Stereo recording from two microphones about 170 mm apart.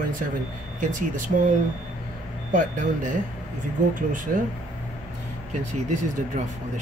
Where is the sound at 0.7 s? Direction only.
50° right (ahead or behind).